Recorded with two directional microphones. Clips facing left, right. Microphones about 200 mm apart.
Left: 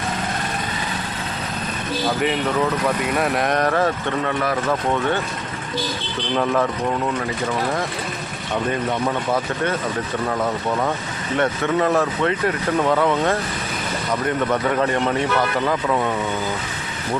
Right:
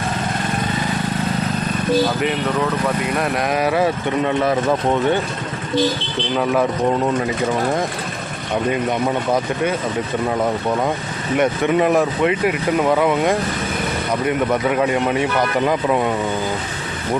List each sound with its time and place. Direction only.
3.0 s speech: centre (ahead or behind); by 5.2 s 20° right (ahead or behind)
6.3 s speech: 5° right (ahead or behind)
11.3 s speech: 15° right (ahead or behind)